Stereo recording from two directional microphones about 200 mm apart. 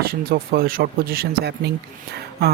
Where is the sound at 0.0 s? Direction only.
50° right (ahead or behind).